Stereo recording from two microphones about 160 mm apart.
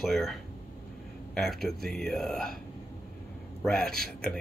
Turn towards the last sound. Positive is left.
turn(degrees=5)  # may be behind; listen again after turning